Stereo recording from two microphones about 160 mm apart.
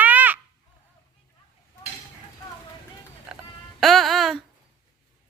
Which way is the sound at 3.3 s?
5° right (ahead or behind).